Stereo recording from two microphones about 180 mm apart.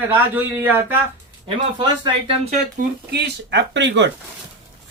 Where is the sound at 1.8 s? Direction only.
35° right (ahead or behind).